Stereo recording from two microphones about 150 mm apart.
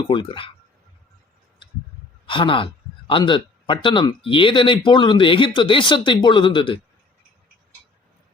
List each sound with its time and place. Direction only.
0.1 s speech: 35° left (ahead or behind)
2.2 s speech: 35° left (ahead or behind)